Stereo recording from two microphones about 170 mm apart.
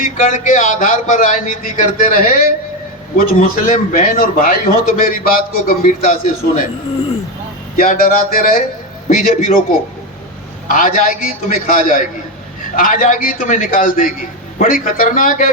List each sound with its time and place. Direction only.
0.0 s a man's voice: 50° left (ahead or behind)
7.8 s a man's voice: 55° left (ahead or behind)
10.7 s a man's voice: 55° left (ahead or behind)